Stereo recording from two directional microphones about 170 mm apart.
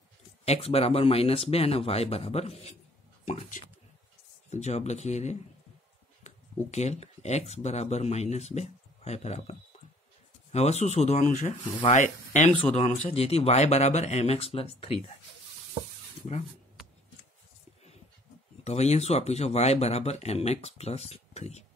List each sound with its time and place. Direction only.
0.5 s speech: 35° left (ahead or behind)
4.5 s speech: 40° left (ahead or behind)
6.2 s a sound: 40° left (ahead or behind)
6.7 s speech: 40° left (ahead or behind)
18.6 s speech: 40° left (ahead or behind)